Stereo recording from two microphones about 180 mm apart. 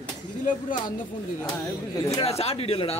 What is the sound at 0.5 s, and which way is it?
Speech, 50° left (ahead or behind).